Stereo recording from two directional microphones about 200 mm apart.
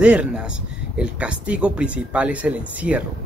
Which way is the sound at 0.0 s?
5° right (ahead or behind).